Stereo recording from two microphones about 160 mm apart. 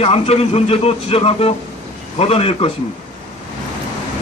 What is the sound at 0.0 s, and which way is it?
A man's voice, 40° left (ahead or behind).